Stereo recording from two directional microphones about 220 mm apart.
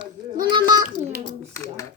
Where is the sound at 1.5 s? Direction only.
15° left (ahead or behind).